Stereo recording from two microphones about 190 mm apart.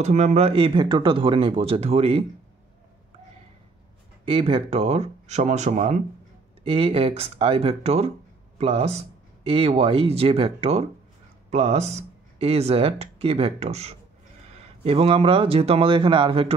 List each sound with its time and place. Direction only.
0.0 s speech: 35° right (ahead or behind)
4.3 s speech: 30° right (ahead or behind)